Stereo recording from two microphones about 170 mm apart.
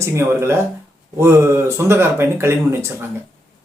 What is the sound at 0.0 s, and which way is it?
Speech, 15° right (ahead or behind).